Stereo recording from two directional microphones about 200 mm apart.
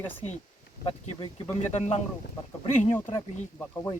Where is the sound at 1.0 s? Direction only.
30° left (ahead or behind).